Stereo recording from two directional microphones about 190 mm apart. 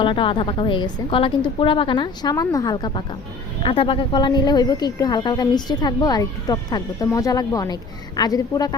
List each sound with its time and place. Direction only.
0.0 s a woman's voice: 25° left (ahead or behind)